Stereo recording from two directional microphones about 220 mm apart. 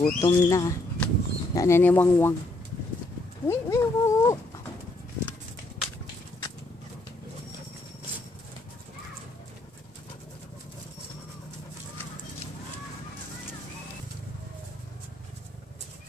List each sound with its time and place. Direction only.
0.0 s speech: 15° left (ahead or behind)
3.4 s speech: 15° left (ahead or behind)